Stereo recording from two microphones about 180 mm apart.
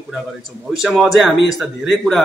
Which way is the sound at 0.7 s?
Centre (ahead or behind).